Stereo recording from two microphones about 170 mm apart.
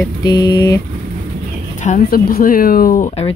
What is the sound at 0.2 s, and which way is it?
Speech, 25° left (ahead or behind).